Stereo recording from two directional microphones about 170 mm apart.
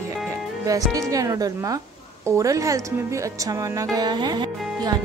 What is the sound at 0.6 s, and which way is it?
Speech, 20° right (ahead or behind).